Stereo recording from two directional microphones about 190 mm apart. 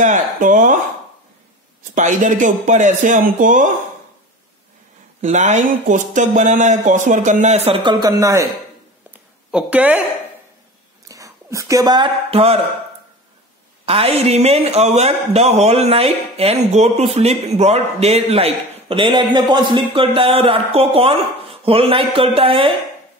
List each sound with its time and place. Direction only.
0.0 s speech: 40° right (ahead or behind)
2.0 s speech: 40° right (ahead or behind)
5.2 s speech: 35° right (ahead or behind); by 8.5 s 15° right (ahead or behind)
9.1 s a sound: 5° right (ahead or behind)
11.1 s speech: 15° right (ahead or behind)
13.8 s speech: 30° right (ahead or behind)